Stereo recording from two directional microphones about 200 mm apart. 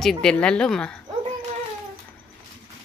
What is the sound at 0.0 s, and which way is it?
Speech, 5° left (ahead or behind).